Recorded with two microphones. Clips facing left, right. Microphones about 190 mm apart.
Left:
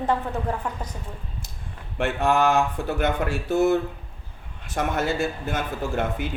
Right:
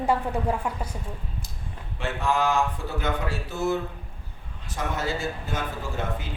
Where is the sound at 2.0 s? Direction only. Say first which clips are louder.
Left 4 dB; 65° left (ahead or behind).